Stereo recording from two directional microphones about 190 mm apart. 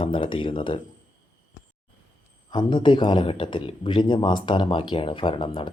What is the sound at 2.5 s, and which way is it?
Speech, 25° left (ahead or behind).